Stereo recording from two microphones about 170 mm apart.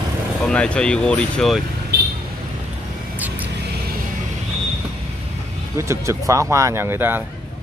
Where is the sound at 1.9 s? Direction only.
65° right (ahead or behind).